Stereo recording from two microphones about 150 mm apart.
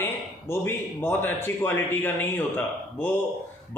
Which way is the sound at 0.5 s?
15° left (ahead or behind).